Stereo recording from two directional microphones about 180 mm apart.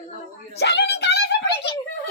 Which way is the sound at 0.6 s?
70° left (ahead or behind).